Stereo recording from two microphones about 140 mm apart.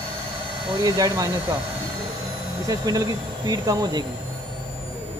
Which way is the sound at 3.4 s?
30° right (ahead or behind).